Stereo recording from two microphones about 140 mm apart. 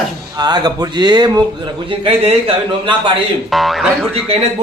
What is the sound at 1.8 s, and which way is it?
A man's voice, 40° right (ahead or behind).